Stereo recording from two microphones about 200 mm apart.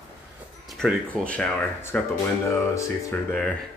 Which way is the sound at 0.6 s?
Centre (ahead or behind).